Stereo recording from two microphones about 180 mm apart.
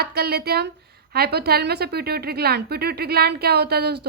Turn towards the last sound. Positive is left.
turn(degrees=-65)  # may be behind; listen again after turning